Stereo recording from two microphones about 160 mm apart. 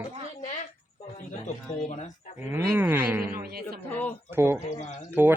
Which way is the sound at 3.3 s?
70° right (ahead or behind).